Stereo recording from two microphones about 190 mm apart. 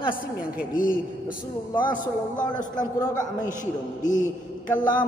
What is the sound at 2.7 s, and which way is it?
Speech, 20° left (ahead or behind).